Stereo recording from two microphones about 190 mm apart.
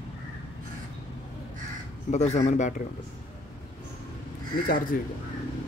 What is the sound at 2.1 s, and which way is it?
Speech, 35° left (ahead or behind).